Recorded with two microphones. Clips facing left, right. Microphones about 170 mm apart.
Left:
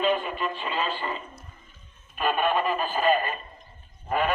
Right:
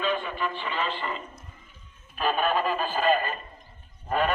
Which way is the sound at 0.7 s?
15° left (ahead or behind).